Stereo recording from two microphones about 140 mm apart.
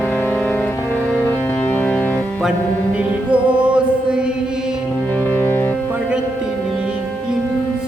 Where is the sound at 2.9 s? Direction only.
10° right (ahead or behind).